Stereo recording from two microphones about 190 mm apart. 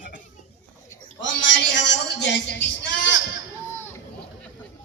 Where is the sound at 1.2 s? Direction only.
75° left (ahead or behind).